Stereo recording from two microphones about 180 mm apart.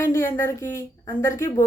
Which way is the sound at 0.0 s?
15° left (ahead or behind).